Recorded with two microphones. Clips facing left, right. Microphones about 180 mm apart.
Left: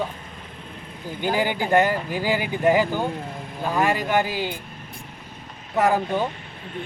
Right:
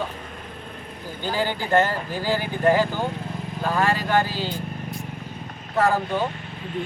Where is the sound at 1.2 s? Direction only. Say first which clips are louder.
Left 3 dB; 15° left (ahead or behind).